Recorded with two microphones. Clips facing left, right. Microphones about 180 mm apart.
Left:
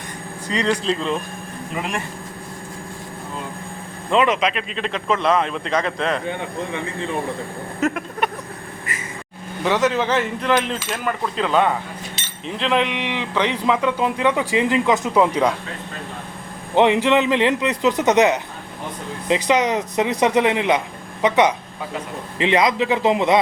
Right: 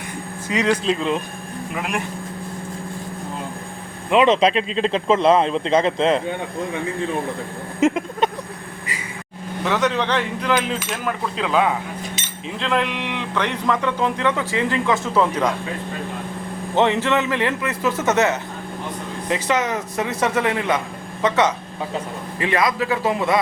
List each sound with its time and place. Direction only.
0.5 s speech: 10° right (ahead or behind)
1.7 s speech: centre (ahead or behind)
4.1 s a man's voice: 20° right (ahead or behind)
4.4 s a man's voice: 30° right (ahead or behind)
7.9 s a man's voice: 25° right (ahead or behind)
9.6 s speech: centre (ahead or behind)
12.9 s speech: 65° left (ahead or behind)
13.1 s speech: 5° left (ahead or behind)
16.7 s a man's voice: 15° left (ahead or behind)